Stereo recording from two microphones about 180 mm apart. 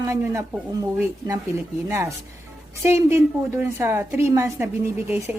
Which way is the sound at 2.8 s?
15° right (ahead or behind).